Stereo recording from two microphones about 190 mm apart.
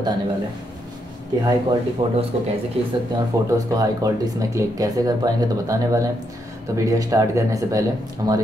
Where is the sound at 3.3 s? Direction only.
15° right (ahead or behind).